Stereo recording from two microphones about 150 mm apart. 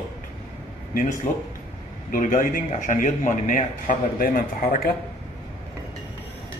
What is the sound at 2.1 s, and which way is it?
A man's voice, 60° left (ahead or behind).